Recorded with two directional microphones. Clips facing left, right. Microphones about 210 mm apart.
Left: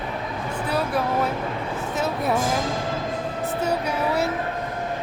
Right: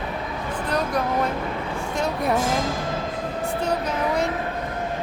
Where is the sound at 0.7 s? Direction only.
5° left (ahead or behind).